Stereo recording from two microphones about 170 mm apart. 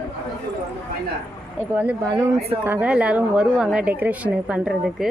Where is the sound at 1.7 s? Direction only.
10° right (ahead or behind).